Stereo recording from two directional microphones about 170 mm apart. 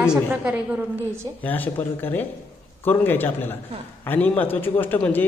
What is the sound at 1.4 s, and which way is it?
A man's voice, 10° left (ahead or behind).